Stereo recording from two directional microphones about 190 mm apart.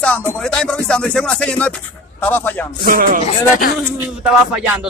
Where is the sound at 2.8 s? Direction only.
50° right (ahead or behind).